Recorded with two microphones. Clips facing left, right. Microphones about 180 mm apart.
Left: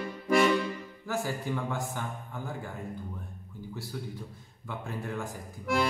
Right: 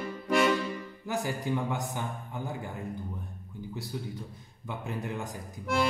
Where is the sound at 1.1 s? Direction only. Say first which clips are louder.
Right 1 dB; 20° right (ahead or behind).